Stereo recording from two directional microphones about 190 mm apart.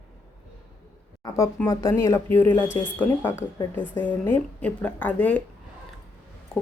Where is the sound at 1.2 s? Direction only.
20° left (ahead or behind).